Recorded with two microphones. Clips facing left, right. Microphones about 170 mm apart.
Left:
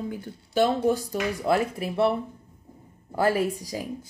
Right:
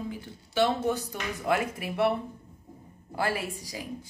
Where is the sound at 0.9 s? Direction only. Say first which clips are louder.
Left 6 dB; 35° left (ahead or behind).